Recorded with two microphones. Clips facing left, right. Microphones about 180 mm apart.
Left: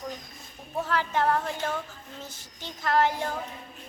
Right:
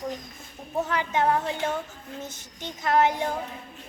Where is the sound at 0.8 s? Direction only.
20° right (ahead or behind).